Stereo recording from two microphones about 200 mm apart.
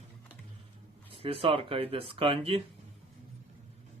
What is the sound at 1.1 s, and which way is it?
Speech, 25° right (ahead or behind).